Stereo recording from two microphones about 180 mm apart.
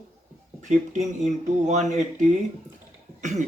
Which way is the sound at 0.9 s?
40° right (ahead or behind).